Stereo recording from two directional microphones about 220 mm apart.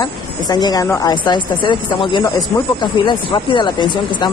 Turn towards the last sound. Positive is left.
turn(degrees=20)  # may be behind; listen again after turning